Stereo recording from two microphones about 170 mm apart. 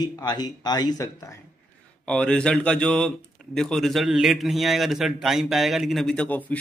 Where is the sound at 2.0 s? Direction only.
5° left (ahead or behind).